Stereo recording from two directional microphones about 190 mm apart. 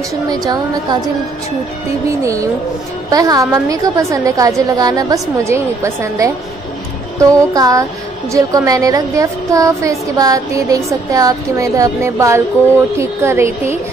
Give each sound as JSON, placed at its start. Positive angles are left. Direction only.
{"t": 0.1, "sound": "a woman's voice", "side_deg": -20}
{"t": 2.2, "sound": "a woman's voice", "side_deg": -15}